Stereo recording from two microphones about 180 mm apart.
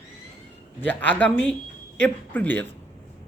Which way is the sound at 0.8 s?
10° left (ahead or behind).